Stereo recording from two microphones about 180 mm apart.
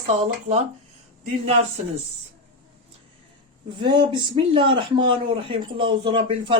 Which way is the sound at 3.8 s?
25° right (ahead or behind).